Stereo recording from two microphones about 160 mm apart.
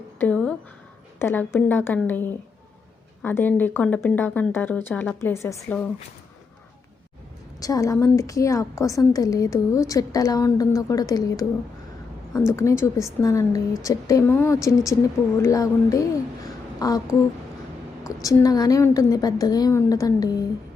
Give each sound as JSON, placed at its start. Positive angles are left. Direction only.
{"t": 0.2, "sound": "a sound", "side_deg": 5}
{"t": 1.2, "sound": "a woman's voice", "side_deg": 10}
{"t": 7.6, "sound": "a woman's voice", "side_deg": 20}
{"t": 12.5, "sound": "a woman's voice", "side_deg": 15}